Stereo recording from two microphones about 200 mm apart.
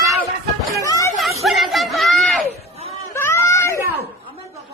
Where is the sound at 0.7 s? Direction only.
15° left (ahead or behind).